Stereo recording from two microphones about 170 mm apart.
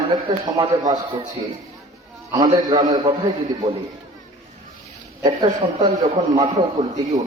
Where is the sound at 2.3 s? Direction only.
25° right (ahead or behind).